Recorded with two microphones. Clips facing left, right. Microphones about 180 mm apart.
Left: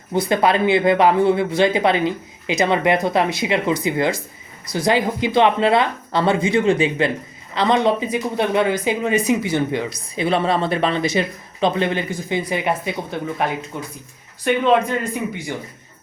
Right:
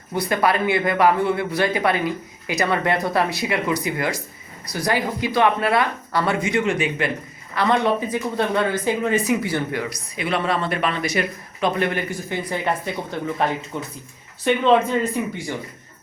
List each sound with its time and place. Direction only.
0.1 s speech: 25° left (ahead or behind); by 14.8 s 10° left (ahead or behind)